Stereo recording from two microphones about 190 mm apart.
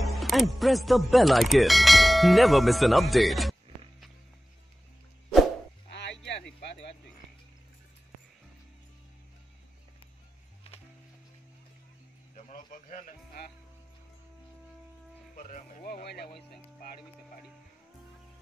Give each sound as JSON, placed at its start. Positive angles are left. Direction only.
{"t": 0.0, "sound": "speech", "side_deg": 0}
{"t": 5.9, "sound": "music", "side_deg": 65}
{"t": 6.6, "sound": "a sound", "side_deg": 65}
{"t": 12.4, "sound": "music", "side_deg": 45}
{"t": 15.3, "sound": "music", "side_deg": 45}